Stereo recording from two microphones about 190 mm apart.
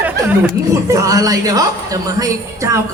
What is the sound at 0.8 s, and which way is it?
A woman's voice, 15° right (ahead or behind).